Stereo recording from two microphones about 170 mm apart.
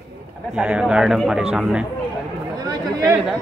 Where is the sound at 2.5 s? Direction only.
25° right (ahead or behind).